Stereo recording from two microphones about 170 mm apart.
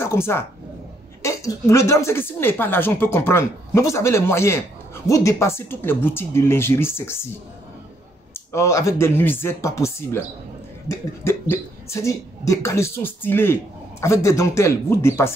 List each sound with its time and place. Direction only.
0.0 s a woman's voice: 15° left (ahead or behind)
8.3 s a woman's voice: 15° left (ahead or behind)